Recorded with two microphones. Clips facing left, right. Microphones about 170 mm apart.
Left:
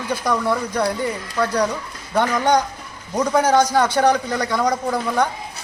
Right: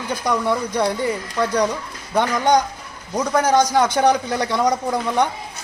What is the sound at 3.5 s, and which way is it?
A man's voice, 15° right (ahead or behind).